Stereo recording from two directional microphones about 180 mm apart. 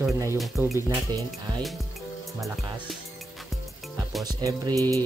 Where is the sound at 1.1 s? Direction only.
20° right (ahead or behind).